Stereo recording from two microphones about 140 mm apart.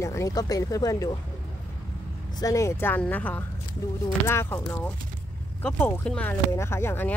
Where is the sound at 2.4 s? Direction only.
20° left (ahead or behind).